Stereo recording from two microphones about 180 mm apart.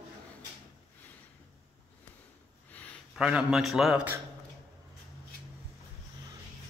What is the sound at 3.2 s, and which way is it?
Speech, 5° right (ahead or behind).